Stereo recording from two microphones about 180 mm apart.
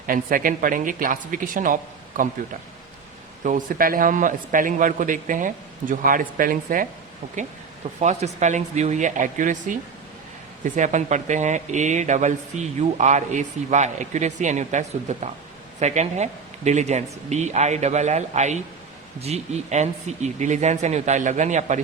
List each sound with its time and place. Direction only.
0.1 s a man's voice: 50° right (ahead or behind)
3.4 s a man's voice: 50° right (ahead or behind)
8.0 s speech: 40° right (ahead or behind)